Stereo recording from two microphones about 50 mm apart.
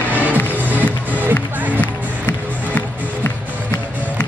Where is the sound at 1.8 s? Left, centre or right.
Left.